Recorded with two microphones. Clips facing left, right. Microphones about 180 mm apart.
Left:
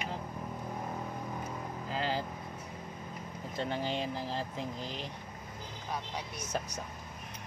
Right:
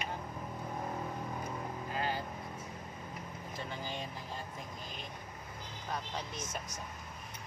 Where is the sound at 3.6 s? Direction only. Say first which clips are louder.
Left 8 dB; 70° left (ahead or behind).